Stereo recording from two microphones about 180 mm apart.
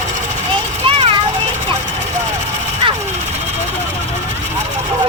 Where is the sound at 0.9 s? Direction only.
35° right (ahead or behind).